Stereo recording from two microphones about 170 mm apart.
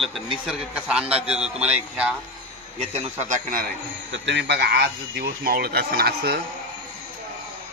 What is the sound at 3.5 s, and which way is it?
A man's voice, 75° right (ahead or behind).